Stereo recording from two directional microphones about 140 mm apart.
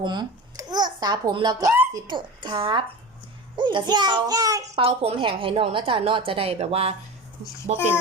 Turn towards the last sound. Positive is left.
turn(degrees=-50)  # may be behind; listen again after turning